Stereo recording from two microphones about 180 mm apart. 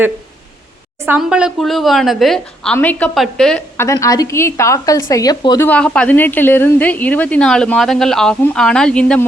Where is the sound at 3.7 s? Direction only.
15° left (ahead or behind).